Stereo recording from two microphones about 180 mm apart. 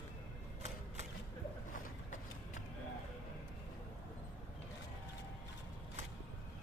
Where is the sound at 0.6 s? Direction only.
40° right (ahead or behind).